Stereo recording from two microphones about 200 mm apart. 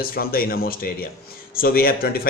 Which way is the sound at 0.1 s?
45° left (ahead or behind).